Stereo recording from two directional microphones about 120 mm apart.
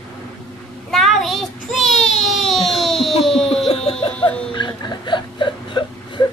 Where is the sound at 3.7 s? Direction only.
55° left (ahead or behind).